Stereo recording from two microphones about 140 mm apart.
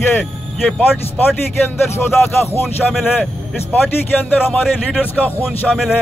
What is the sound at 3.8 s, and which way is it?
Speech, 10° left (ahead or behind).